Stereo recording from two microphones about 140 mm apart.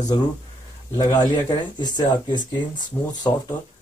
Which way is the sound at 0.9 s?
30° left (ahead or behind).